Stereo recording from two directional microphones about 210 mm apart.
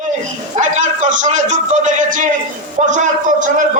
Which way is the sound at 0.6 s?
35° right (ahead or behind).